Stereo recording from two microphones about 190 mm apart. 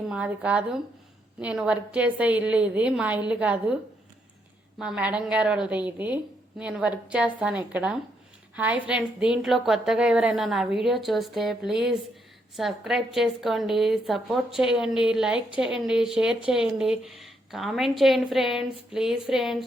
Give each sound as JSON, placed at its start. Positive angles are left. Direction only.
{"t": 0.0, "sound": "a woman's voice", "side_deg": -5}
{"t": 4.8, "sound": "a woman's voice", "side_deg": -5}